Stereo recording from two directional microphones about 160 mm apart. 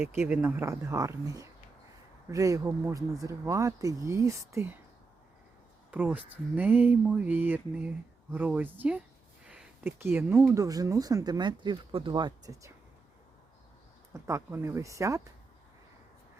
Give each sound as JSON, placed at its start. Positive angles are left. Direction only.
{"t": 0.3, "sound": "speech", "side_deg": -15}
{"t": 5.9, "sound": "speech", "side_deg": -10}
{"t": 14.1, "sound": "speech", "side_deg": -20}